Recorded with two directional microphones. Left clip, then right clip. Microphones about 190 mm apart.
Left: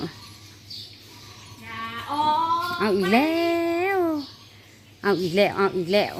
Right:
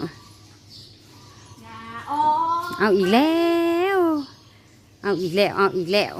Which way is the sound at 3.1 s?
30° right (ahead or behind).